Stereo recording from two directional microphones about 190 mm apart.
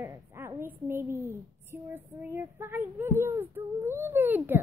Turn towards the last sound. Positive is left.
turn(degrees=-10)  # may be behind; listen again after turning